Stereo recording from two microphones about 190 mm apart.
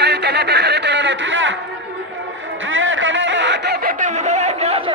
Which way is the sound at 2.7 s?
90° right.